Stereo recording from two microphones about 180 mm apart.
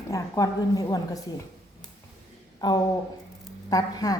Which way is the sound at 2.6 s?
20° left (ahead or behind).